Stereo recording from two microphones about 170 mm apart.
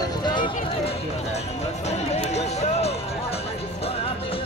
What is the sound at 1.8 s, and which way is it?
Music, 40° left (ahead or behind).